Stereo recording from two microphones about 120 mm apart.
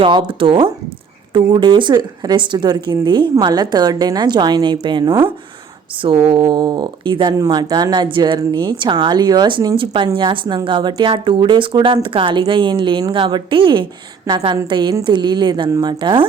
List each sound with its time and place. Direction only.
0.0 s a woman's voice: 45° right (ahead or behind)
7.3 s a woman's voice: 35° right (ahead or behind)